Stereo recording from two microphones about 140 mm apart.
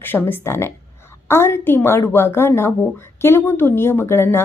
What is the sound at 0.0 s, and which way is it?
A woman's voice, 15° left (ahead or behind).